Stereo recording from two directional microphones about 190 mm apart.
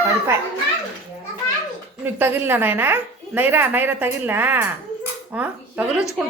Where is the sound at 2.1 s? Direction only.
10° right (ahead or behind).